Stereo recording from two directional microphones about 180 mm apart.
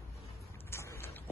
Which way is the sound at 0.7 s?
15° left (ahead or behind).